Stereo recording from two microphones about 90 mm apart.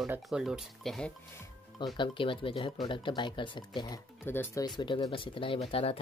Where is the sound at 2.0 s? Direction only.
70° left (ahead or behind).